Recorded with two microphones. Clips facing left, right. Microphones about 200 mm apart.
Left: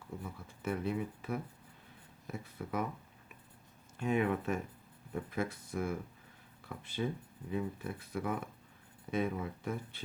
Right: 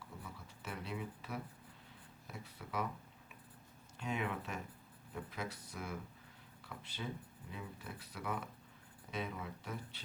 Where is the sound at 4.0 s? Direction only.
50° left (ahead or behind).